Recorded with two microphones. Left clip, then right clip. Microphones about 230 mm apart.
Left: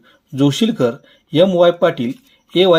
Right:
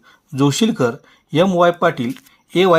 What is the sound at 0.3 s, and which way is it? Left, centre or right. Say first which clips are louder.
Speech: left 1 dB; right.